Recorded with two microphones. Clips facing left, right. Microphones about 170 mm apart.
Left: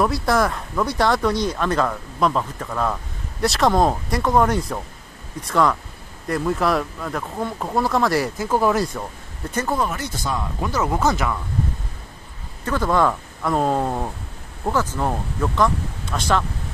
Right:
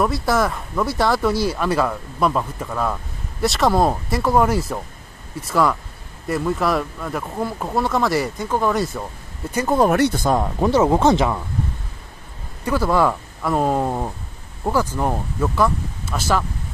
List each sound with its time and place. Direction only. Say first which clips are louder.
0.0 s speech: even; centre (ahead or behind)
9.5 s speech: right 3 dB; 10° right (ahead or behind)
9.9 s speech: right 9 dB; 60° right (ahead or behind); by 10.7 s 45° right (ahead or behind)
10.7 s speech: right 6 dB; 30° right (ahead or behind)
12.6 s speech: right 1 dB; 10° right (ahead or behind)